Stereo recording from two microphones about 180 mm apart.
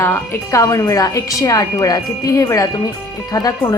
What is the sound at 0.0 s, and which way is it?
Speech, 15° left (ahead or behind).